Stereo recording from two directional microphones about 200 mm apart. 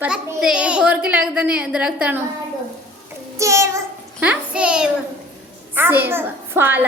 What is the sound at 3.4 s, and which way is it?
A woman's voice, 15° right (ahead or behind).